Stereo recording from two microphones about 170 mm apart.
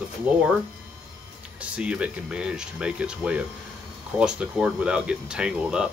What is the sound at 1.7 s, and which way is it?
Speech, 5° right (ahead or behind).